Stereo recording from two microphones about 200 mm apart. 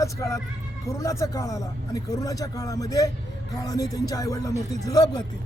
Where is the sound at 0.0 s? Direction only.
15° left (ahead or behind).